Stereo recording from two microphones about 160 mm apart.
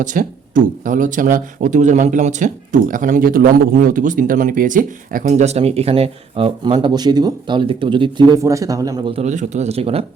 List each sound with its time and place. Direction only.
0.0 s speech: 55° right (ahead or behind); by 8.4 s 30° right (ahead or behind)
8.4 s a man's voice: 20° right (ahead or behind)
9.1 s speech: 45° right (ahead or behind)